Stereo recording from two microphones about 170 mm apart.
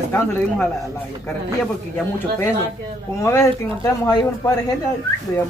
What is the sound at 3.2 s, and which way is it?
Speech, 20° left (ahead or behind).